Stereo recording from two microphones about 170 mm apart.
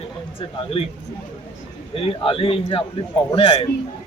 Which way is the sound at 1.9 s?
30° left (ahead or behind).